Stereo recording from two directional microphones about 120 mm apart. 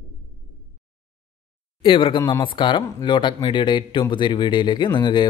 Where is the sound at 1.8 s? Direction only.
45° left (ahead or behind).